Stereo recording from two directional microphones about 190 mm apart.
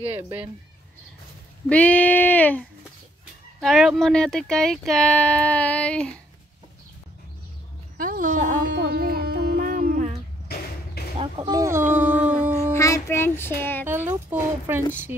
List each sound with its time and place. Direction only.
1.7 s child singing: 5° left (ahead or behind)
3.6 s speech: centre (ahead or behind)
8.0 s speech: 45° right (ahead or behind)
8.7 s music: 55° right (ahead or behind)
11.0 s a sound: 55° left (ahead or behind)
11.3 s speech: 20° right (ahead or behind)
12.7 s child singing: 15° left (ahead or behind)
13.8 s speech: 10° right (ahead or behind)